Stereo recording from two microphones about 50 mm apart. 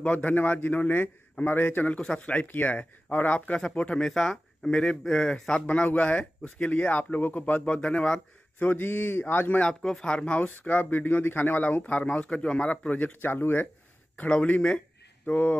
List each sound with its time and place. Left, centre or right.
0.0 s a man's voice: left
1.9 s speech: left
4.0 s speech: centre; by 7.7 s left
7.7 s speech: left
8.5 s a man's voice: left
9.8 s speech: centre
10.0 s speech: left
13.2 s a man's voice: left
14.1 s speech: left